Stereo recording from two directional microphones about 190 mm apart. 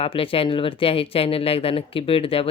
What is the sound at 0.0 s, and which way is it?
Speech, 30° left (ahead or behind).